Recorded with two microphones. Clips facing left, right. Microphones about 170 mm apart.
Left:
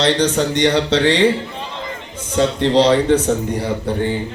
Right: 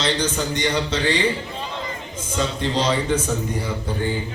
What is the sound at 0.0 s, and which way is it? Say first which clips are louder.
A man's voice: left 7 dB; 70° left (ahead or behind).